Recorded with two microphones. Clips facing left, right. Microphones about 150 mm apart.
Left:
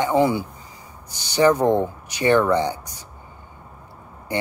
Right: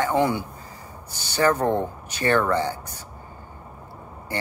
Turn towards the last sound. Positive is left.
turn(degrees=15)  # may be behind; listen again after turning